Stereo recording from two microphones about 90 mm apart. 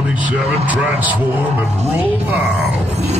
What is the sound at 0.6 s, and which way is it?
A man's voice, 15° right (ahead or behind).